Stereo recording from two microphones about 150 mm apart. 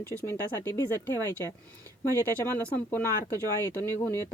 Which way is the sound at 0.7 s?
15° left (ahead or behind).